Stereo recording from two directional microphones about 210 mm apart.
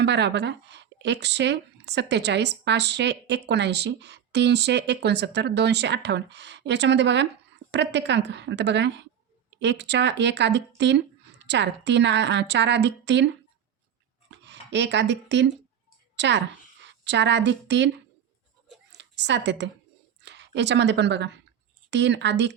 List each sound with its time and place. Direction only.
0.0 s a woman's voice: 55° right (ahead or behind)